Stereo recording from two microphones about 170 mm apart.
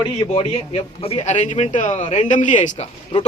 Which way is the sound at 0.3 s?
35° left (ahead or behind).